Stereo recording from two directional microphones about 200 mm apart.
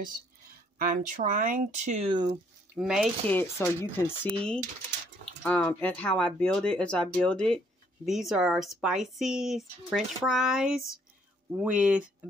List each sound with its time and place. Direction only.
0.7 s speech: 45° right (ahead or behind); by 2.3 s 25° right (ahead or behind)
2.7 s speech: centre (ahead or behind)
3.3 s speech: 10° left (ahead or behind)
5.4 s speech: 5° left (ahead or behind)